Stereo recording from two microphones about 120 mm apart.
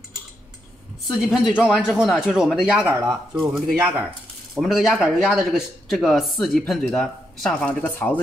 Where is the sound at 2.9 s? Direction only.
25° right (ahead or behind).